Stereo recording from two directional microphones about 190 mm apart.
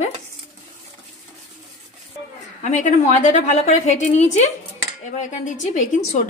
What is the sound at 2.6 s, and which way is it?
A woman's voice, 40° left (ahead or behind).